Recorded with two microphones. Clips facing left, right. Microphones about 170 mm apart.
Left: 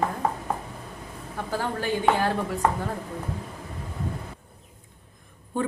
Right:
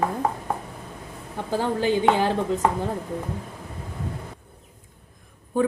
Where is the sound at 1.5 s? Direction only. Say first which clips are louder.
Right 5 dB; 20° right (ahead or behind).